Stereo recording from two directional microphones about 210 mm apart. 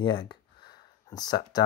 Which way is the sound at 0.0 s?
20° left (ahead or behind).